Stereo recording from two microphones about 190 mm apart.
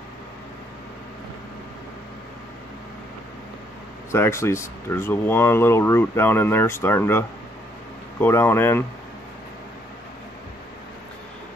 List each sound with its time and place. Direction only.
4.1 s speech: 15° left (ahead or behind)